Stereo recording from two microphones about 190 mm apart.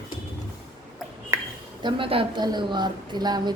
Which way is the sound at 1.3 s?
15° right (ahead or behind).